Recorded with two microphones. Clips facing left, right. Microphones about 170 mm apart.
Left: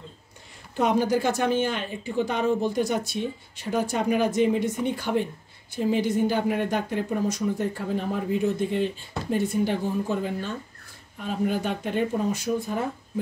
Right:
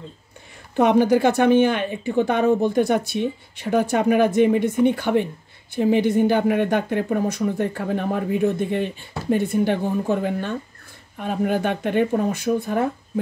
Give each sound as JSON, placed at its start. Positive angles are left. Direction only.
{"t": 0.7, "sound": "speech", "side_deg": -65}